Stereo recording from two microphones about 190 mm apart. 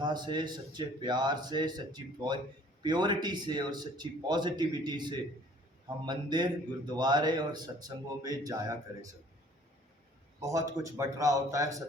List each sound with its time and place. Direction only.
0.0 s a man's voice: 20° right (ahead or behind)
10.4 s a man's voice: 15° right (ahead or behind)